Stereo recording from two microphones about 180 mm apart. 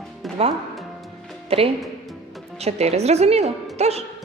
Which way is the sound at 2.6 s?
35° right (ahead or behind).